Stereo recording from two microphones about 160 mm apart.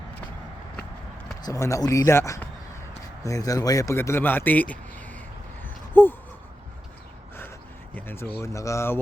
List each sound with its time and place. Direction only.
1.4 s speech: 20° left (ahead or behind)
5.9 s a sound: 10° left (ahead or behind)
7.9 s speech: 15° left (ahead or behind)